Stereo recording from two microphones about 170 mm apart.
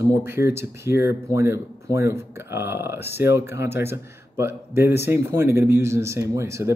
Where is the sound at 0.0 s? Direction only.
15° right (ahead or behind).